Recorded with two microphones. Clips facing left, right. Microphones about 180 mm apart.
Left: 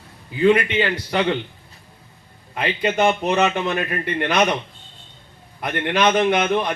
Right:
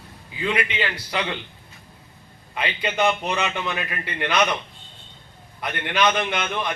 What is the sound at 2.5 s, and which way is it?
A man's voice, 45° left (ahead or behind).